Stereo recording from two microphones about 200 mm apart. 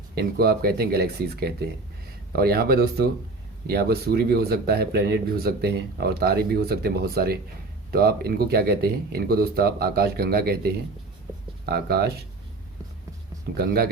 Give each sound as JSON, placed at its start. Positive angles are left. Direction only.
{"t": 0.2, "sound": "speech", "side_deg": -50}
{"t": 13.6, "sound": "speech", "side_deg": -50}